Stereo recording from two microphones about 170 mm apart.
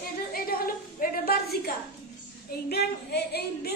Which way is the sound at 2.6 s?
70° left (ahead or behind).